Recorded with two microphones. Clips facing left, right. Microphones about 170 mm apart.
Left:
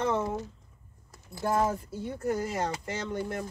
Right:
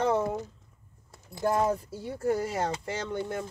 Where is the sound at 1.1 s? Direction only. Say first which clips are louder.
Right 1 dB; 20° right (ahead or behind).